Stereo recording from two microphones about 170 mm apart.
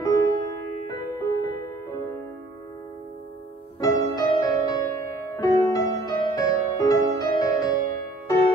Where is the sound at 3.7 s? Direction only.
20° left (ahead or behind).